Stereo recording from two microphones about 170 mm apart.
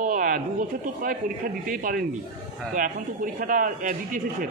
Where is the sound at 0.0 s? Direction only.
50° right (ahead or behind).